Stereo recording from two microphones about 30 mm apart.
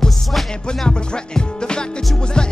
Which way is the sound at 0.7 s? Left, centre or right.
Left.